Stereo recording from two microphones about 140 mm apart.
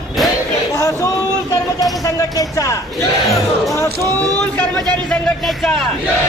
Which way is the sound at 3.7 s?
20° left (ahead or behind).